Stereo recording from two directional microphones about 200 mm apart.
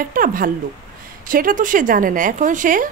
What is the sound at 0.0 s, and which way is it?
Speech, 45° right (ahead or behind).